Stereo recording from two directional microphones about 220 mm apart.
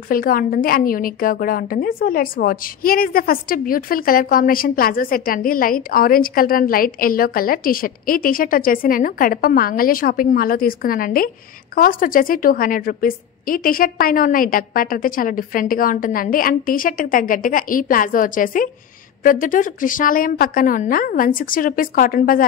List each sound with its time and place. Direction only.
0.1 s a woman's voice: 40° left (ahead or behind)